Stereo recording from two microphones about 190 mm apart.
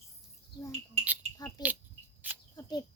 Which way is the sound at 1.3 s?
20° left (ahead or behind).